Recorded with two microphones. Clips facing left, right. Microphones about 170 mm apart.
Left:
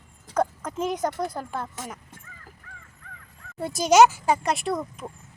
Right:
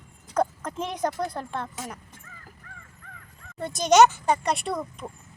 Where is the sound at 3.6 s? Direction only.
5° left (ahead or behind).